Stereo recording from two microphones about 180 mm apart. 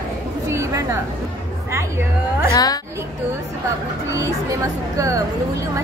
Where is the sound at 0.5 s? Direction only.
15° right (ahead or behind).